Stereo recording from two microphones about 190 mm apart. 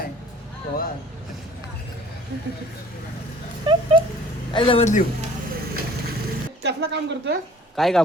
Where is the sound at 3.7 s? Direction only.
25° right (ahead or behind).